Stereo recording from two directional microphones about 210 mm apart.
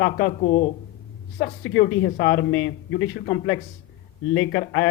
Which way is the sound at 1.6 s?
60° left (ahead or behind).